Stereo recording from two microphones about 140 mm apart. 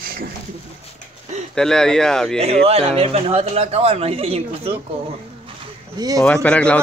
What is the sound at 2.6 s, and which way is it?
Speech, 45° right (ahead or behind).